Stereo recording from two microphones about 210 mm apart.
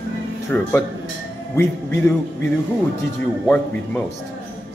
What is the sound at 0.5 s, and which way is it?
Speech, 5° left (ahead or behind).